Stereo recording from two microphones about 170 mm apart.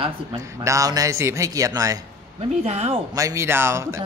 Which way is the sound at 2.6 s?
40° right (ahead or behind).